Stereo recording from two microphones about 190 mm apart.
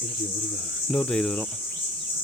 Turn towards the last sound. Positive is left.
turn(degrees=5)  # may be behind; listen again after turning